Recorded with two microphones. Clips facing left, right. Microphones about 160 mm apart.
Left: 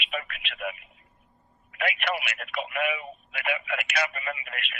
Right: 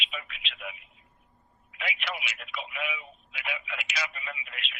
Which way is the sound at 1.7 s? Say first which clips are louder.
Left 7 dB; 60° left (ahead or behind).